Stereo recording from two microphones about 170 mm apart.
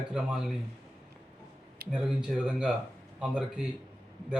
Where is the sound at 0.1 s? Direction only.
5° right (ahead or behind).